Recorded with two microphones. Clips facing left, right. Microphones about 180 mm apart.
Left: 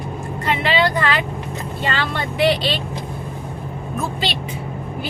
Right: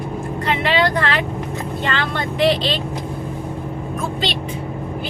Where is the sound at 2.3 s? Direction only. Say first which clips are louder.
Right 1 dB; 5° left (ahead or behind).